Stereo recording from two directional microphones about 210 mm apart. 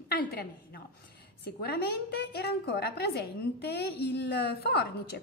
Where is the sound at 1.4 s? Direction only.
50° left (ahead or behind).